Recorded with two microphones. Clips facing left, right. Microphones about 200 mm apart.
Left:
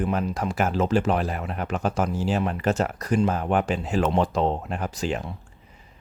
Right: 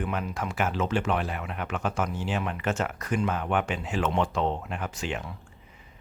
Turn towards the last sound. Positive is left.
turn(degrees=35)  # may be behind; listen again after turning